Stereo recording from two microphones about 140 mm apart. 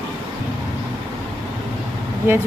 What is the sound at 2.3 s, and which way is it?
Speech, 15° right (ahead or behind).